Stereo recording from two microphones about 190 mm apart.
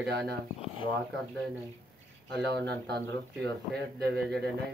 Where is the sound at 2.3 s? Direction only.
60° right (ahead or behind).